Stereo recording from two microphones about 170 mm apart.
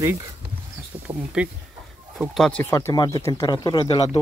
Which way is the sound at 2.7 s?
20° left (ahead or behind).